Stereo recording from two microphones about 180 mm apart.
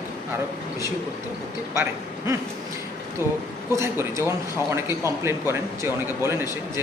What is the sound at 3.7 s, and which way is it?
A man's voice, 15° right (ahead or behind).